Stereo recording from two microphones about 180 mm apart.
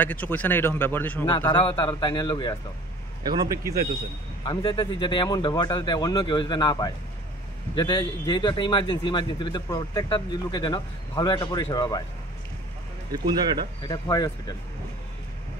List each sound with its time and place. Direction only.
0.0 s speech: 10° left (ahead or behind)
1.3 s speech: 25° left (ahead or behind)
3.3 s speech: 20° right (ahead or behind)
4.5 s speech: 25° left (ahead or behind)
13.1 s speech: 25° right (ahead or behind)
13.8 s speech: 20° left (ahead or behind)